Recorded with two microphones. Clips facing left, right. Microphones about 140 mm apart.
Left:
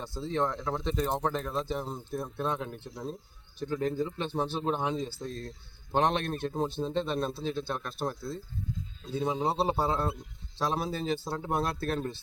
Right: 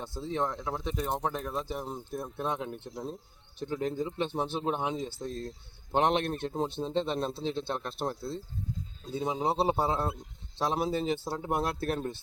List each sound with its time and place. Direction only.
0.0 s speech: 15° right (ahead or behind)
0.4 s speech: 5° right (ahead or behind)